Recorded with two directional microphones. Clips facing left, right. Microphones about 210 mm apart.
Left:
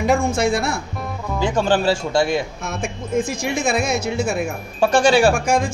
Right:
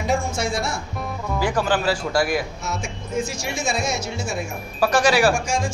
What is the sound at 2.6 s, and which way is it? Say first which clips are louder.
Speech: left 3 dB; 55° left (ahead or behind).